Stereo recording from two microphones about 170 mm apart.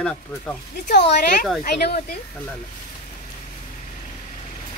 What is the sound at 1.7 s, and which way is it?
Speech, 65° left (ahead or behind).